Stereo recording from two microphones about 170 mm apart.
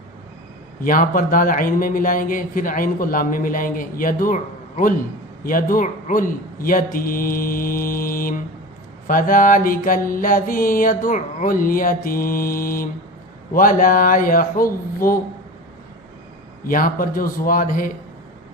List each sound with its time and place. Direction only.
0.8 s a man's voice: 55° left (ahead or behind)
5.4 s mantra: 55° left (ahead or behind)
16.6 s mantra: 55° left (ahead or behind)